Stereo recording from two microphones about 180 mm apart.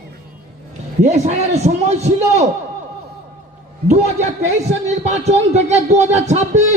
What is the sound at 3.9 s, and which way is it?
Speech, 40° right (ahead or behind).